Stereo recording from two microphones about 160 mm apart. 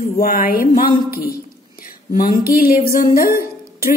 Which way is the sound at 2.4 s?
65° left (ahead or behind).